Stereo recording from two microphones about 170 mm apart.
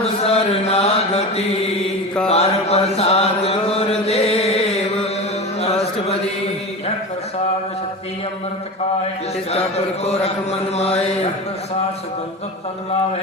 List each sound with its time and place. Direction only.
0.0 s mantra: 35° left (ahead or behind)
2.3 s chant: 40° left (ahead or behind)
9.5 s a sound: 40° left (ahead or behind)